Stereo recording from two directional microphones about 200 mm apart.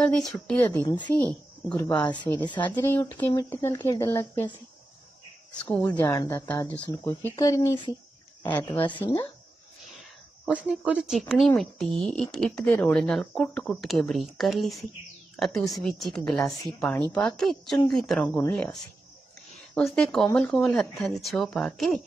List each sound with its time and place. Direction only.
0.0 s speech: 5° left (ahead or behind)
5.7 s speech: 10° left (ahead or behind)
10.4 s speech: 5° right (ahead or behind)